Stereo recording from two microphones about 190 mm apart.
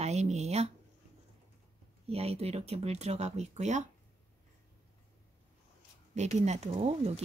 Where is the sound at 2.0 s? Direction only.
30° right (ahead or behind).